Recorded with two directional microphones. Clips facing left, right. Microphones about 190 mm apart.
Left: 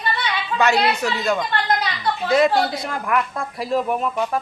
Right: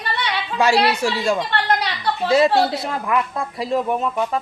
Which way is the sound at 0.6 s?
30° right (ahead or behind).